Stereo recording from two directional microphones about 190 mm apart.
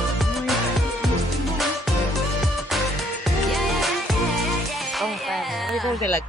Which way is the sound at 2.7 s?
Centre (ahead or behind).